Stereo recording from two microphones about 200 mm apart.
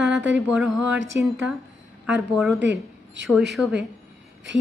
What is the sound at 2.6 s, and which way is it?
Speech, 65° right (ahead or behind).